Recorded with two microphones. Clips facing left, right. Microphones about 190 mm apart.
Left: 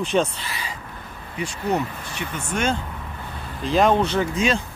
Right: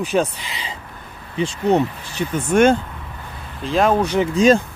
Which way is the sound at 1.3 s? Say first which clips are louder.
Right 7 dB; 25° right (ahead or behind).